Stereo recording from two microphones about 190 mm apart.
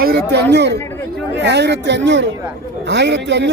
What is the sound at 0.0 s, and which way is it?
Speech, 60° right (ahead or behind).